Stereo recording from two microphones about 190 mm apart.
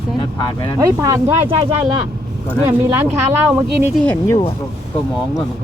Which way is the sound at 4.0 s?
10° left (ahead or behind).